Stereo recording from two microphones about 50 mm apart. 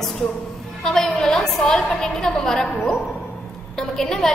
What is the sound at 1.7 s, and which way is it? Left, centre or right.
A woman's voice, centre.